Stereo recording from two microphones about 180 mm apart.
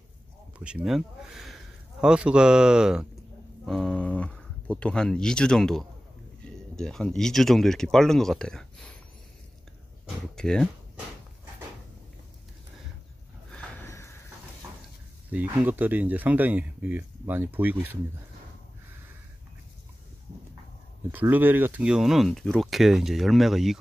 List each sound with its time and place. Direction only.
0.6 s speech: 5° right (ahead or behind)
10.0 s speech: 5° left (ahead or behind)
13.8 s a sound: 15° left (ahead or behind)
15.2 s speech: 10° right (ahead or behind)
21.1 s speech: 10° right (ahead or behind)